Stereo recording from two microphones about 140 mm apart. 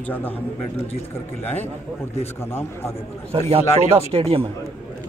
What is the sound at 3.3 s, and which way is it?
A man's voice, 45° right (ahead or behind).